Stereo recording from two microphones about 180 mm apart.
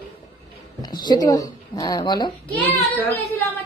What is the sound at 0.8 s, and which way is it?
Speech, 25° left (ahead or behind).